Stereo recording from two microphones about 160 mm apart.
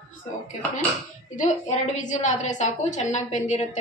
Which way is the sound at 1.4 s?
50° left (ahead or behind).